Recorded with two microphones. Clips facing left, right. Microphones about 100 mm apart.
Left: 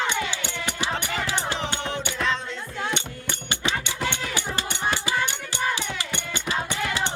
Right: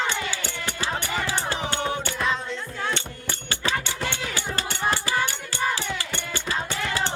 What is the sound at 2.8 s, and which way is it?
Music, 20° left (ahead or behind).